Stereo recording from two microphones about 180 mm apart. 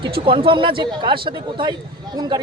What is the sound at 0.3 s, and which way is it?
Speech, 30° right (ahead or behind).